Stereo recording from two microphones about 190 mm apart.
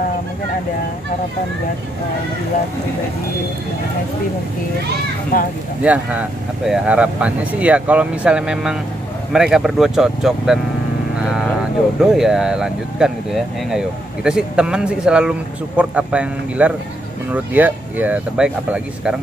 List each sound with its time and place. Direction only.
5.3 s speech: 45° left (ahead or behind)
5.8 s speech: 5° right (ahead or behind)